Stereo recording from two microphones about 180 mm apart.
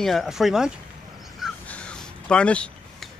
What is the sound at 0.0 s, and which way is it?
A man's voice, centre (ahead or behind).